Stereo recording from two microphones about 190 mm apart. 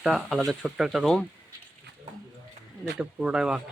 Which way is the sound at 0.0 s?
Centre (ahead or behind).